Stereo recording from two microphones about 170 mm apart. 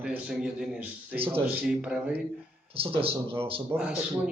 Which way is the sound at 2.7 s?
35° right (ahead or behind).